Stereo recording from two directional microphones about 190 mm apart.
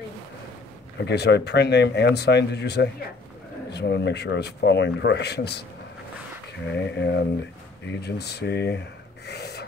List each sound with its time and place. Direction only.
1.0 s speech: 60° left (ahead or behind)
6.7 s speech: 60° left (ahead or behind)